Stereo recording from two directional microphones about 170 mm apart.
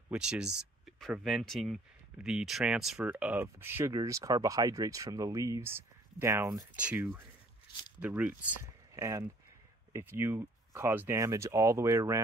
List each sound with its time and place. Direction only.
0.1 s speech: 5° right (ahead or behind)